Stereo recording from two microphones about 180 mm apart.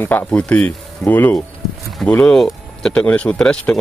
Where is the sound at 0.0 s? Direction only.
10° left (ahead or behind).